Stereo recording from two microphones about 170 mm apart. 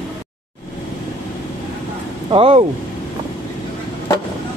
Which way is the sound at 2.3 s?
30° right (ahead or behind).